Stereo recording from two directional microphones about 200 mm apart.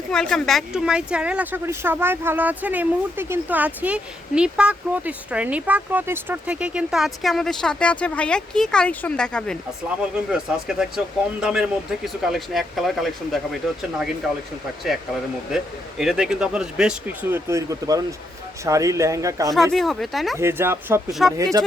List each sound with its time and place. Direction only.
0.1 s speech: 5° left (ahead or behind)
15.5 s speech: centre (ahead or behind)
19.7 s speech: centre (ahead or behind)
20.4 s speech: 10° right (ahead or behind)
21.1 s speech: centre (ahead or behind)
21.3 s speech: 15° right (ahead or behind)